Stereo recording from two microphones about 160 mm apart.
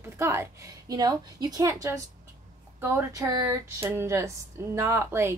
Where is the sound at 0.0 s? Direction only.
15° right (ahead or behind).